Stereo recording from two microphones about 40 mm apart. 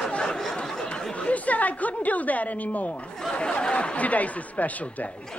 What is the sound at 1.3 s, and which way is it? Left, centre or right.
A woman's voice, left.